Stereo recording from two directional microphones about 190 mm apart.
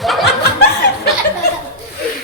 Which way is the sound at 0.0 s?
Centre (ahead or behind).